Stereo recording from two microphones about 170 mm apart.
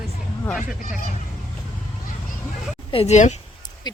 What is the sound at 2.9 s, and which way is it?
Speech, 40° left (ahead or behind).